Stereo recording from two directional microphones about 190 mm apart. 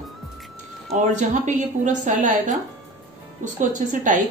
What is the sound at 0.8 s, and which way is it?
A woman's voice, 40° right (ahead or behind).